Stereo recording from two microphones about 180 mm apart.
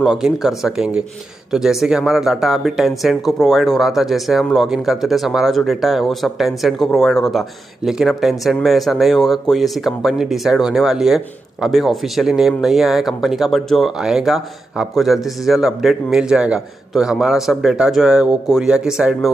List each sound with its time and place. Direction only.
0.0 s speech: 5° right (ahead or behind)